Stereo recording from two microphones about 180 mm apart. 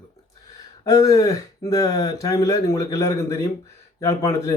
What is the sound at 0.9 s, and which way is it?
Speech, 20° left (ahead or behind).